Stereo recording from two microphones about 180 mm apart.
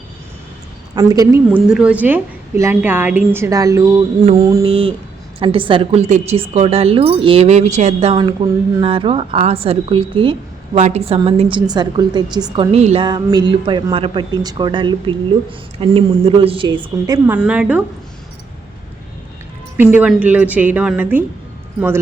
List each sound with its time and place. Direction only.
0.9 s speech: 20° right (ahead or behind)
1.5 s a woman's voice: 5° right (ahead or behind); by 12.6 s 25° right (ahead or behind)
12.7 s a woman's voice: 35° right (ahead or behind)
13.1 s speech: 25° right (ahead or behind)
17.2 s a woman's voice: 10° right (ahead or behind)
19.7 s a woman's voice: 10° right (ahead or behind)